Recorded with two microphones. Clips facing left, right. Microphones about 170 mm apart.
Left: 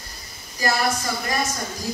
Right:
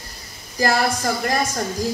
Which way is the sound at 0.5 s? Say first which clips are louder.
Right 3 dB; 50° right (ahead or behind).